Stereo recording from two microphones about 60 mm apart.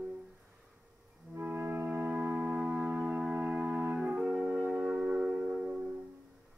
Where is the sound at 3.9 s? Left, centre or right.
Centre.